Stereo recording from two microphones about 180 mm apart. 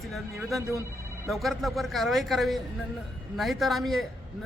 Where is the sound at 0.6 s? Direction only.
15° right (ahead or behind).